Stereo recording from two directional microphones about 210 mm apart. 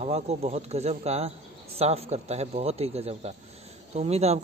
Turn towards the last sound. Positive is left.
turn(degrees=-30)  # may be behind; listen again after turning